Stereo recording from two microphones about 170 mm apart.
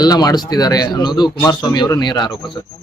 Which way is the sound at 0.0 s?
25° left (ahead or behind).